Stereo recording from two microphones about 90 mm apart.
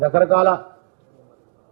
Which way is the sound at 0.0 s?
Centre (ahead or behind).